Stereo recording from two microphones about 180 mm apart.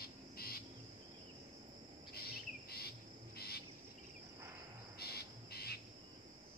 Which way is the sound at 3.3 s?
60° left (ahead or behind).